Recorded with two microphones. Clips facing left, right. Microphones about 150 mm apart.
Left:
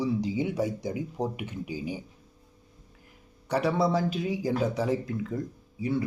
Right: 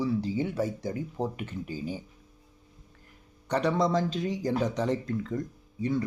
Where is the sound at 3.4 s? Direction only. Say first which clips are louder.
Even; 10° left (ahead or behind).